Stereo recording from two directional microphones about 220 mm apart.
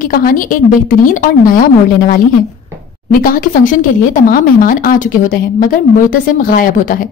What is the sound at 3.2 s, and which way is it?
A woman's voice, 40° left (ahead or behind).